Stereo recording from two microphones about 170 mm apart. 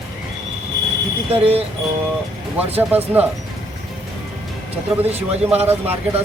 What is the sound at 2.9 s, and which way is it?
Speech, 10° right (ahead or behind).